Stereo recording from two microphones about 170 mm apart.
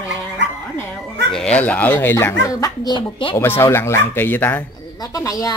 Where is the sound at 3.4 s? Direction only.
15° left (ahead or behind).